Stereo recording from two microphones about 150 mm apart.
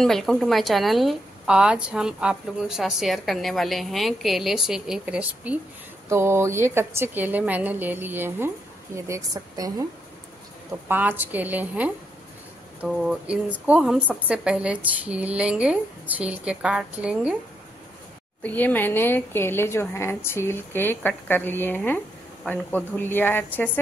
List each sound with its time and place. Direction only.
0.0 s a woman's voice: centre (ahead or behind); by 9.8 s 20° right (ahead or behind)
10.9 s a woman's voice: 10° right (ahead or behind)
18.4 s a woman's voice: 10° left (ahead or behind)